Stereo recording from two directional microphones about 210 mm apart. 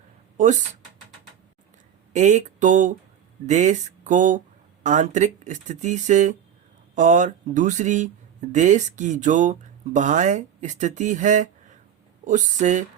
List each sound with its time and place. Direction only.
0.3 s speech: 35° right (ahead or behind)
2.1 s speech: 35° right (ahead or behind)